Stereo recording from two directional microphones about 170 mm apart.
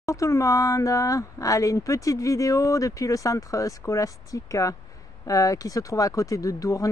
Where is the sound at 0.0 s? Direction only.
20° left (ahead or behind).